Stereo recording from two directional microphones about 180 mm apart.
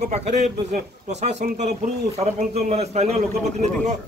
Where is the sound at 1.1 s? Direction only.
40° right (ahead or behind).